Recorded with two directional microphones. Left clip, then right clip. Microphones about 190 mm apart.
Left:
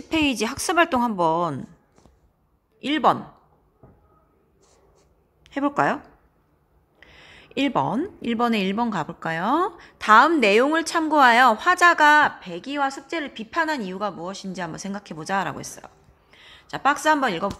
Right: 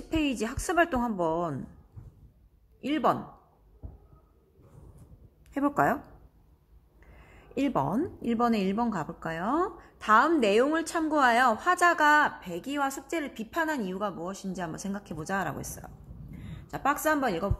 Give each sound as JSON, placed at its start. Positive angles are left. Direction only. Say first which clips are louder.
{"t": 0.1, "sound": "speech", "louder": "left 7 dB", "side_deg": 35}
{"t": 2.8, "sound": "speech", "louder": "left 7 dB", "side_deg": 25}
{"t": 5.4, "sound": "a sound", "louder": "left 4 dB", "side_deg": 15}
{"t": 7.5, "sound": "a woman's voice", "louder": "left 6 dB", "side_deg": 15}
{"t": 8.2, "sound": "speech", "louder": "left 5 dB", "side_deg": 35}
{"t": 12.4, "sound": "a woman's voice", "louder": "left 5 dB", "side_deg": 15}
{"t": 14.1, "sound": "speech", "louder": "left 4 dB", "side_deg": 30}
{"t": 14.7, "sound": "a woman's voice", "louder": "left 4 dB", "side_deg": 15}
{"t": 15.0, "sound": "speech", "louder": "left 4 dB", "side_deg": 30}
{"t": 15.2, "sound": "a woman's voice", "louder": "left 7 dB", "side_deg": 15}
{"t": 16.3, "sound": "a sound", "louder": "left 6 dB", "side_deg": 20}
{"t": 17.1, "sound": "speech", "louder": "left 7 dB", "side_deg": 25}